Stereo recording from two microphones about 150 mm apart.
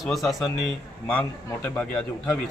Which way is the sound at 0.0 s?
Centre (ahead or behind).